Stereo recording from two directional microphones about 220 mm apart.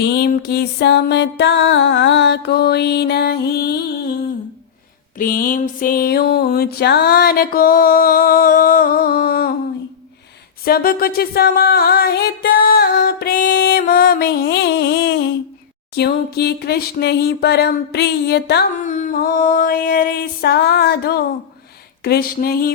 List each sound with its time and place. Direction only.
0.0 s music: 45° left (ahead or behind)
5.1 s a sound: 40° left (ahead or behind)
10.6 s music: 45° left (ahead or behind)
18.8 s music: 35° left (ahead or behind)